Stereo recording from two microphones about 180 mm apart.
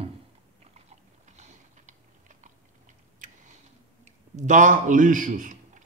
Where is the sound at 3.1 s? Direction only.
45° right (ahead or behind).